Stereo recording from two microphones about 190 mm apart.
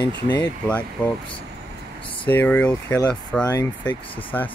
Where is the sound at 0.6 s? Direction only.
5° left (ahead or behind).